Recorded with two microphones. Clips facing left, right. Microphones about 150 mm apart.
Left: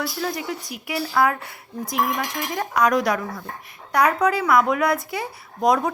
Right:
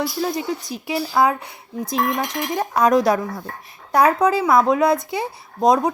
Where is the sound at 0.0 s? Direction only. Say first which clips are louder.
Right 4 dB; 20° right (ahead or behind).